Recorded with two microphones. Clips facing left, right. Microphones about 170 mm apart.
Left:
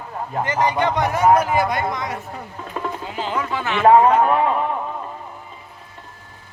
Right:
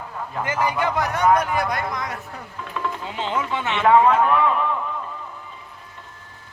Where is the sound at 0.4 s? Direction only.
10° right (ahead or behind).